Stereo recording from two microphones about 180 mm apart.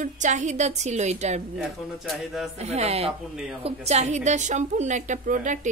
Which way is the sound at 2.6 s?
35° right (ahead or behind).